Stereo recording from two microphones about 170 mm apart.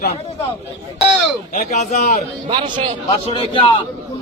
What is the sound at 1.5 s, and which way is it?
Speech, 45° left (ahead or behind).